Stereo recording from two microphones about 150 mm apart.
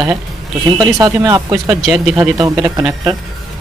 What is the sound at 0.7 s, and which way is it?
Speech, 25° right (ahead or behind).